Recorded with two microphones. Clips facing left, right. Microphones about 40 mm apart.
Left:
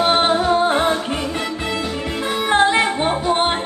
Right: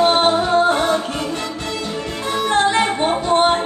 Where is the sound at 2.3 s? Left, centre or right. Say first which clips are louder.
Left 1 dB; centre.